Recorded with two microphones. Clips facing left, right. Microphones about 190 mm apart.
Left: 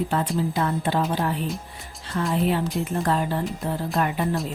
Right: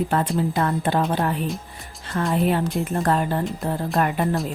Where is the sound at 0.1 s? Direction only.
55° right (ahead or behind).